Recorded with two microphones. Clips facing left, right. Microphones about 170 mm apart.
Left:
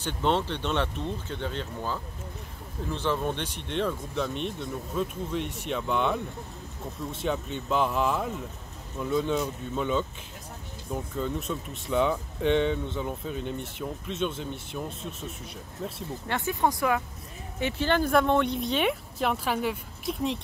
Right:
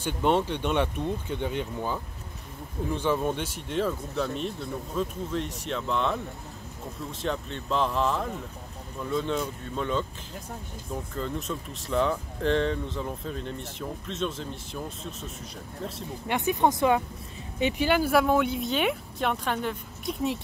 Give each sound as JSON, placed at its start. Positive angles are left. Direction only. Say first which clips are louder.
{"t": 0.0, "sound": "speech", "louder": "right 2 dB", "side_deg": -10}
{"t": 11.1, "sound": "speech", "louder": "left 1 dB", "side_deg": 0}
{"t": 16.3, "sound": "speech", "louder": "right 3 dB", "side_deg": -20}